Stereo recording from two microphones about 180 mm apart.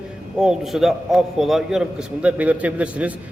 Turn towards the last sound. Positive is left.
turn(degrees=-10)  # may be behind; listen again after turning